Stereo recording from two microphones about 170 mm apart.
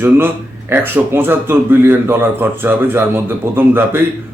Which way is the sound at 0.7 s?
10° right (ahead or behind).